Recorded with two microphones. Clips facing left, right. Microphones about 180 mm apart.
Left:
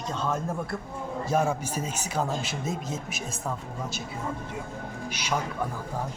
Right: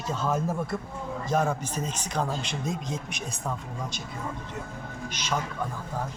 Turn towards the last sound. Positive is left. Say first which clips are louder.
# left 1 dB
turn(degrees=10)  # may be behind; listen again after turning